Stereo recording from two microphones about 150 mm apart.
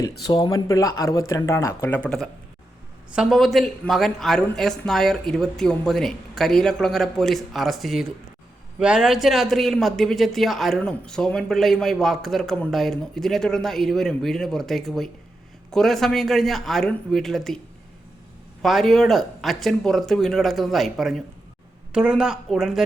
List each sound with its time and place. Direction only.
0.0 s speech: 25° left (ahead or behind); by 17.6 s centre (ahead or behind)
18.6 s speech: centre (ahead or behind)